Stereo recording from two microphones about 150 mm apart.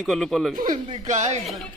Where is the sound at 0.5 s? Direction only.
60° right (ahead or behind).